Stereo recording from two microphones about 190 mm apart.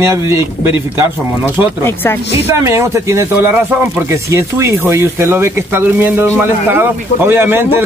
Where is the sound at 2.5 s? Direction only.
15° right (ahead or behind).